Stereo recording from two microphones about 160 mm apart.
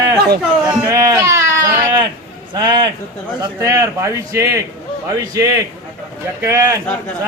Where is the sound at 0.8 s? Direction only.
20° right (ahead or behind).